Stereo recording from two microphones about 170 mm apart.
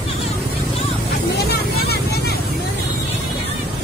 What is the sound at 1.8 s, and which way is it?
Vehicle, 70° left (ahead or behind).